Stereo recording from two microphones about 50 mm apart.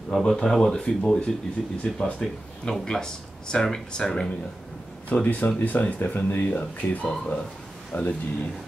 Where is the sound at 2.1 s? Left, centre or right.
Centre.